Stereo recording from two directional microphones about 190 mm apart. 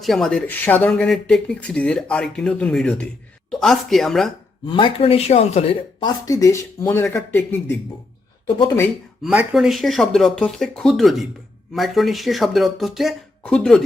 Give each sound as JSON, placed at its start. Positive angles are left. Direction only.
{"t": 0.0, "sound": "speech", "side_deg": 0}
{"t": 4.6, "sound": "speech", "side_deg": 25}
{"t": 6.0, "sound": "speech", "side_deg": 15}
{"t": 9.2, "sound": "speech", "side_deg": -5}